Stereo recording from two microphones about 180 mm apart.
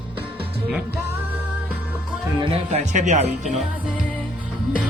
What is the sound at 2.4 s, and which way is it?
Speech, 40° right (ahead or behind).